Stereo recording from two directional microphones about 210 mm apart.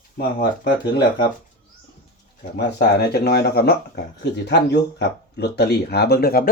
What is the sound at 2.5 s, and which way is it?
Speech, 50° left (ahead or behind).